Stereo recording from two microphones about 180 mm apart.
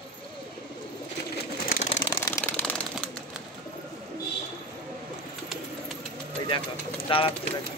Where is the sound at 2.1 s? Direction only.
15° left (ahead or behind).